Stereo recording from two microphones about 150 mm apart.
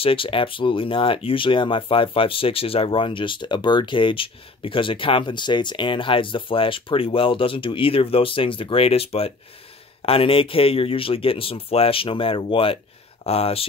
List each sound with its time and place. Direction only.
0.0 s speech: 35° left (ahead or behind)